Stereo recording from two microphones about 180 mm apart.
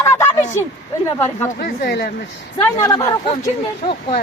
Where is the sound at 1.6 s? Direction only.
65° left (ahead or behind).